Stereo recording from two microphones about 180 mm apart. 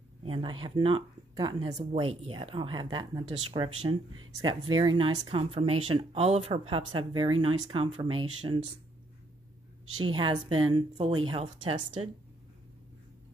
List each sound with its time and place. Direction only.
0.2 s speech: 30° right (ahead or behind)
9.9 s speech: 30° right (ahead or behind)